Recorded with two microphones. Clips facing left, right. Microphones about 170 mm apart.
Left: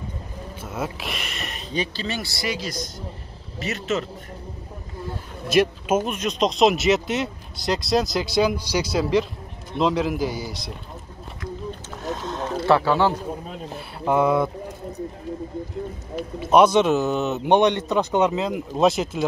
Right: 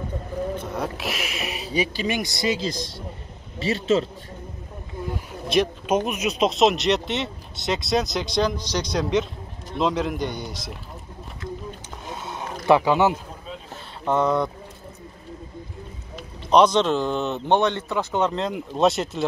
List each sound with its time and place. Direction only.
0.6 s a man's voice: 5° left (ahead or behind); by 4.1 s 30° right (ahead or behind)
5.5 s speech: 5° left (ahead or behind)
6.1 s speech: 5° right (ahead or behind)
12.0 s boat: 10° right (ahead or behind)
12.6 s speech: 15° right (ahead or behind)
14.0 s speech: 10° left (ahead or behind)
16.3 s speech: 5° left (ahead or behind)
17.5 s speech: 15° left (ahead or behind)
18.3 s speech: centre (ahead or behind)